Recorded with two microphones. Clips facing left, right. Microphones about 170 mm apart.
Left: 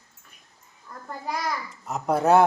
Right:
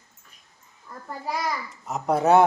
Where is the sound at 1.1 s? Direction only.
Centre (ahead or behind).